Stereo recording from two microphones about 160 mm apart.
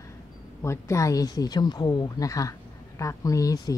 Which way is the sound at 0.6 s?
15° left (ahead or behind).